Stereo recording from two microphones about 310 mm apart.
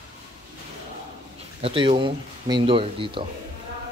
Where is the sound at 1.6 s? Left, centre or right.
Centre.